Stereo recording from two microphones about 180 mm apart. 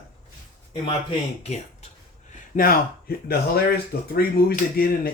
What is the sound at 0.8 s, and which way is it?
Speech, 30° left (ahead or behind).